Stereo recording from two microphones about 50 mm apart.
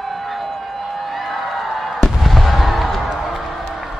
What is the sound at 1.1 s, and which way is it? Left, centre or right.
Fireworks, centre.